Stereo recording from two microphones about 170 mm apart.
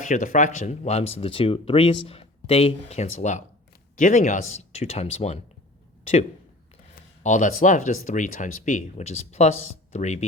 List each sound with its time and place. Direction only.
0.1 s speech: 50° left (ahead or behind)
7.2 s speech: 45° left (ahead or behind)